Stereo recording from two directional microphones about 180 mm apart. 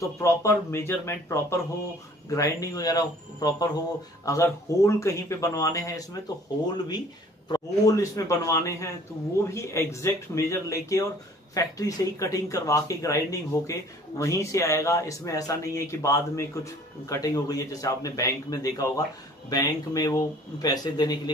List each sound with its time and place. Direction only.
0.2 s speech: 15° left (ahead or behind)
7.4 s speech: 20° left (ahead or behind)